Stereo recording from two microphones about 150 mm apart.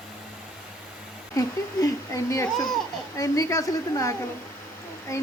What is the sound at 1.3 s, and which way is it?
Speech, 20° left (ahead or behind).